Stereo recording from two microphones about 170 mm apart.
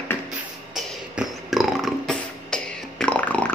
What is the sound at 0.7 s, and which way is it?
Beatboxing, centre (ahead or behind).